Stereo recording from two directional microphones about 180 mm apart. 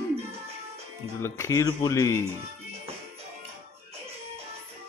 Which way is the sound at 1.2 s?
15° left (ahead or behind).